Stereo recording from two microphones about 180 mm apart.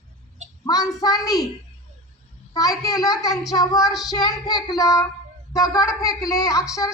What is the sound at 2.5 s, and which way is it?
Speech, 20° left (ahead or behind).